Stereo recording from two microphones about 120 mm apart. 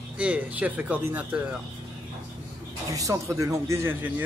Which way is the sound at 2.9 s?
25° right (ahead or behind).